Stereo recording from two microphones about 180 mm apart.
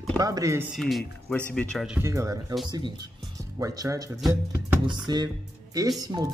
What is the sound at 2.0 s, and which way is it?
Speech, 15° right (ahead or behind).